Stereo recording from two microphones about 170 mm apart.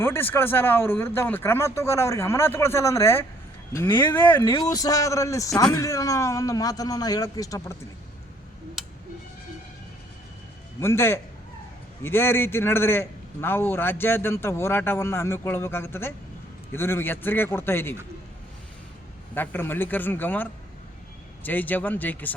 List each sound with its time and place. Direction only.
0.0 s a man's voice: 15° left (ahead or behind)
8.8 s music: centre (ahead or behind)
10.8 s a man's voice: 15° left (ahead or behind)
19.3 s a man's voice: 10° left (ahead or behind)